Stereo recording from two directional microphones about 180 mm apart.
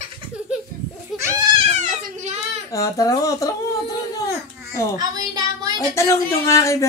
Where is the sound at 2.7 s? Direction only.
20° left (ahead or behind).